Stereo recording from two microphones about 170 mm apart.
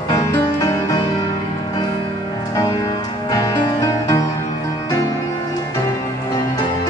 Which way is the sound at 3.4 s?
20° left (ahead or behind).